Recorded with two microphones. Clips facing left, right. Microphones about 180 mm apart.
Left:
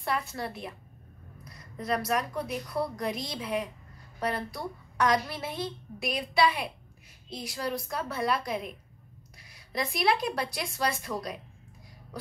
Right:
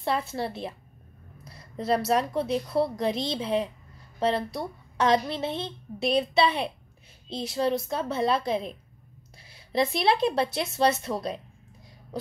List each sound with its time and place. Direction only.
0.0 s a woman's voice: 25° right (ahead or behind)